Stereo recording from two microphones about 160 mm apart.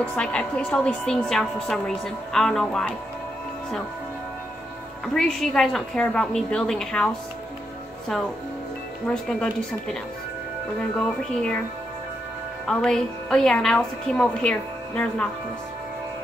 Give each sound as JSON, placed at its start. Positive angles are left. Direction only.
{"t": 0.0, "sound": "a woman's voice", "side_deg": 5}
{"t": 5.0, "sound": "a woman's voice", "side_deg": 5}
{"t": 9.0, "sound": "a woman's voice", "side_deg": 5}
{"t": 12.6, "sound": "a woman's voice", "side_deg": 5}